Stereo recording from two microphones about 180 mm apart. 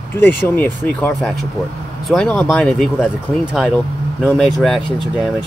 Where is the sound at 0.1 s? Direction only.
10° left (ahead or behind).